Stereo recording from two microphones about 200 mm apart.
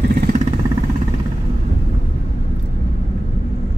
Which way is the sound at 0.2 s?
40° right (ahead or behind).